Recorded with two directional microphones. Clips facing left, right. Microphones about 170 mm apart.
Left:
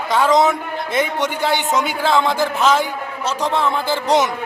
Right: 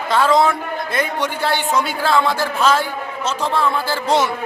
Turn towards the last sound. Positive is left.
turn(degrees=15)  # may be behind; listen again after turning